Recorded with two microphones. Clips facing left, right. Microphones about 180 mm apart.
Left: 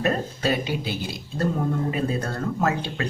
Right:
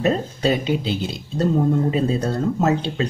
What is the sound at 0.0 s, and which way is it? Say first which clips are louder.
Speech: right 4 dB; 25° right (ahead or behind).